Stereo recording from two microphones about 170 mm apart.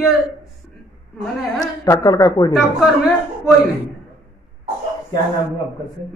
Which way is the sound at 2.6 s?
Centre (ahead or behind).